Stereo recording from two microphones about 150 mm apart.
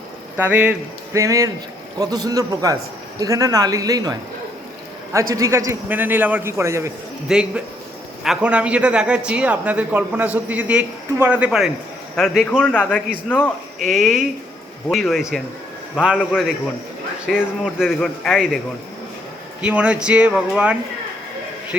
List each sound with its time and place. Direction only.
0.3 s speech: 15° right (ahead or behind)
5.3 s speech: 20° right (ahead or behind)
7.3 s a man's voice: 5° right (ahead or behind)
12.5 s a man's voice: 10° left (ahead or behind)
13.8 s a man's voice: centre (ahead or behind)
19.6 s speech: 10° right (ahead or behind)